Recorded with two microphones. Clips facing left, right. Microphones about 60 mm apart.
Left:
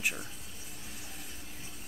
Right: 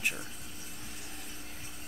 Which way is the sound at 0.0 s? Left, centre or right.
Centre.